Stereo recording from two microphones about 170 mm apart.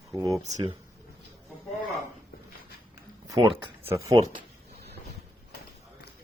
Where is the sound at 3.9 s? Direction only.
20° right (ahead or behind).